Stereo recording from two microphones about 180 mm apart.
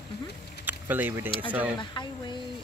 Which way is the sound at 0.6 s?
10° right (ahead or behind).